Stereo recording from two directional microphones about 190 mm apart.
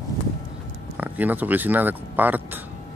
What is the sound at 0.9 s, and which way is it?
Speech, 10° right (ahead or behind).